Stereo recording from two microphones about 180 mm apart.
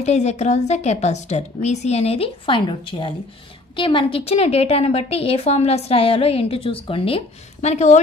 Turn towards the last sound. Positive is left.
turn(degrees=40)  # may be behind; listen again after turning